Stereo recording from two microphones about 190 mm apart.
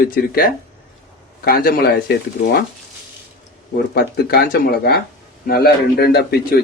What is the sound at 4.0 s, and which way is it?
Speech, 55° left (ahead or behind).